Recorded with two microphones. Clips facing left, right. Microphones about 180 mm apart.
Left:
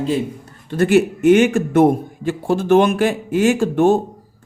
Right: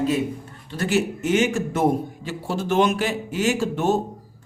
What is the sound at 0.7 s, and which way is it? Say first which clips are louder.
A man's voice: left 8 dB; 55° left (ahead or behind).